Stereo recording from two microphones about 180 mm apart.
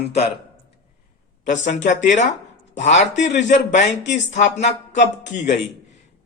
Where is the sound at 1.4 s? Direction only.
40° left (ahead or behind).